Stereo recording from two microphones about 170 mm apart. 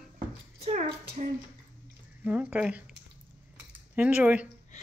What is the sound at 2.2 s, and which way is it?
Speech, 10° right (ahead or behind).